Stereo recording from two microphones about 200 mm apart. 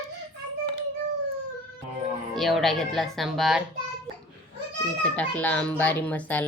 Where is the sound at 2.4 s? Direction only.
Centre (ahead or behind).